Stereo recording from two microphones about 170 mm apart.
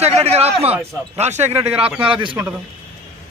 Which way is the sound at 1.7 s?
5° right (ahead or behind).